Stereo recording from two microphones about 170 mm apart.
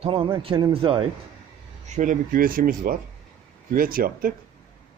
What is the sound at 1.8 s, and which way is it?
Speech, 45° right (ahead or behind).